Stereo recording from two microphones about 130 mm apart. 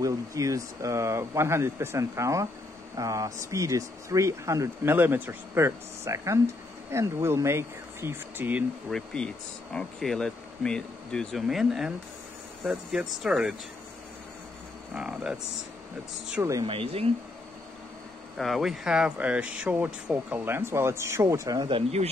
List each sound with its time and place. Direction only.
0.0 s speech: 25° right (ahead or behind)
8.9 s speech: 5° left (ahead or behind)
15.0 s speech: 10° right (ahead or behind)
16.6 s speech: 45° right (ahead or behind)
18.4 s speech: centre (ahead or behind); by 22.1 s 45° right (ahead or behind)